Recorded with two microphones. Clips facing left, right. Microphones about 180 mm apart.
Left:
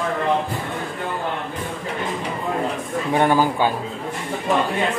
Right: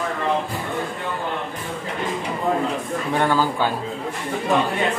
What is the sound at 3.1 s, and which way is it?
Speech, 15° left (ahead or behind).